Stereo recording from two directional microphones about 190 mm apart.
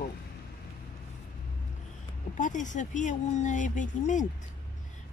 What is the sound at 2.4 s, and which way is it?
Speech, 40° left (ahead or behind).